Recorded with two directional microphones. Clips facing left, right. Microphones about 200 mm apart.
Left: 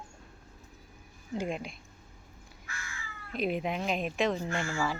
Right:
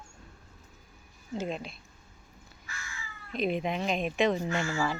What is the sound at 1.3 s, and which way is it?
Speech, 10° left (ahead or behind).